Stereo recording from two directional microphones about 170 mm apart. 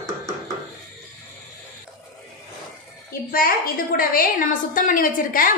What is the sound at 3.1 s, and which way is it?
A woman's voice, 60° left (ahead or behind).